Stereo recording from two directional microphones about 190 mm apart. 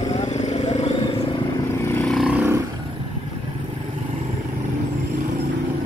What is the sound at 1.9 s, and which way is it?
Vehicle, 5° left (ahead or behind).